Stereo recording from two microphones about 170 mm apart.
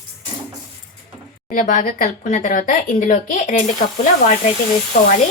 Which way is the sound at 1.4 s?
50° left (ahead or behind).